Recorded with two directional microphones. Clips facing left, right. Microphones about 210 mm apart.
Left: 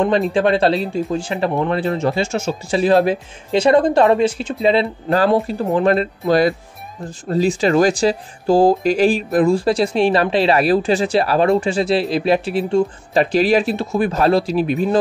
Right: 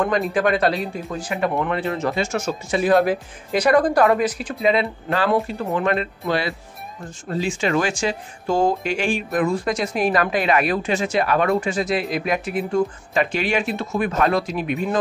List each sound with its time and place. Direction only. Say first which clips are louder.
0.3 s speech: left 4 dB; 30° left (ahead or behind)